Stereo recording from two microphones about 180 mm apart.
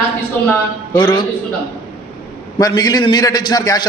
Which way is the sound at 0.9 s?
25° left (ahead or behind).